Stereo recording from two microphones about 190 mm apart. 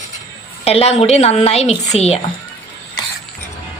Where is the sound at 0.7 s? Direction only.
35° left (ahead or behind).